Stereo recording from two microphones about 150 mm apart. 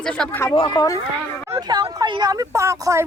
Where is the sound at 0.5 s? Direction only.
30° left (ahead or behind).